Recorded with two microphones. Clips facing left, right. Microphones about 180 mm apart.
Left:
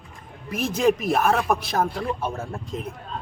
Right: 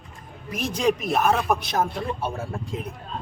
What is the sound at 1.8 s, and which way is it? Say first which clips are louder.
Speech: left 1 dB; 25° right (ahead or behind).